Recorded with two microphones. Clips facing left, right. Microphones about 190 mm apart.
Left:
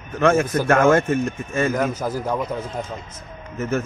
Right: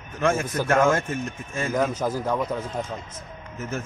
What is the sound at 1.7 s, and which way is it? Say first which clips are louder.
Speech: left 1 dB; 5° left (ahead or behind).